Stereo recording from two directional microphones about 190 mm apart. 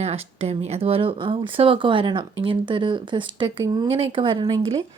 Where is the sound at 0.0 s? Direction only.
35° right (ahead or behind).